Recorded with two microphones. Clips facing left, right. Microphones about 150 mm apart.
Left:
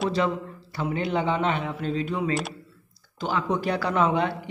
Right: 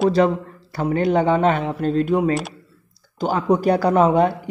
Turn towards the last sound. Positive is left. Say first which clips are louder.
# right 8 dB
turn(degrees=-40)  # may be behind; listen again after turning